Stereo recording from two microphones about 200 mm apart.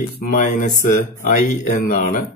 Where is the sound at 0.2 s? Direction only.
40° left (ahead or behind).